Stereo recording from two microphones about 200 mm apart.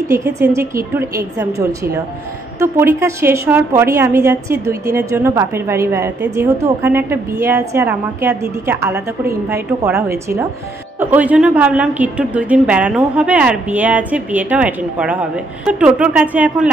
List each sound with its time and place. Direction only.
0.1 s a woman's voice: 15° right (ahead or behind)
8.9 s a woman's voice: 50° right (ahead or behind)
9.9 s a woman's voice: 15° right (ahead or behind)